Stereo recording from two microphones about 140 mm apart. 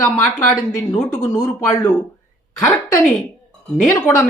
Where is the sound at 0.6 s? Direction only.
25° left (ahead or behind).